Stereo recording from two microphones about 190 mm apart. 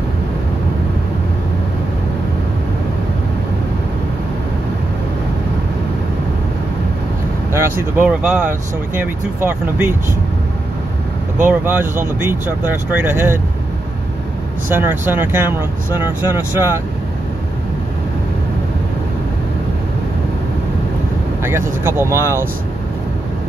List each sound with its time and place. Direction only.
7.5 s speech: 10° right (ahead or behind)
11.4 s speech: 10° right (ahead or behind)
14.7 s speech: 10° right (ahead or behind)
21.4 s speech: 10° right (ahead or behind)